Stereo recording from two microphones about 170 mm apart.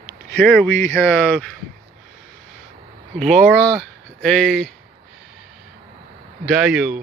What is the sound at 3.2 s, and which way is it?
Speech, centre (ahead or behind).